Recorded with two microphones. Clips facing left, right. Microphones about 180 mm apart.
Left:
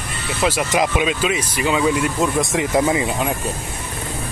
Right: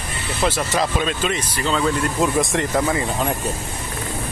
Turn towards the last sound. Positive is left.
turn(degrees=15)  # may be behind; listen again after turning